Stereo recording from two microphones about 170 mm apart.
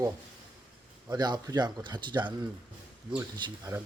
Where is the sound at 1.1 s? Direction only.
25° right (ahead or behind).